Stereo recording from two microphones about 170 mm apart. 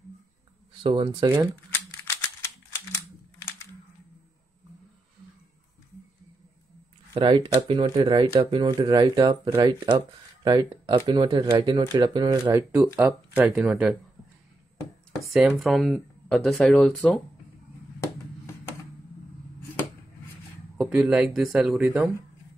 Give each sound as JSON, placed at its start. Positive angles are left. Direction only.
{"t": 0.8, "sound": "speech", "side_deg": -30}
{"t": 1.7, "sound": "typewriter", "side_deg": 15}
{"t": 7.2, "sound": "speech", "side_deg": -30}
{"t": 13.3, "sound": "speech", "side_deg": -5}
{"t": 15.3, "sound": "speech", "side_deg": -5}
{"t": 20.7, "sound": "speech", "side_deg": -5}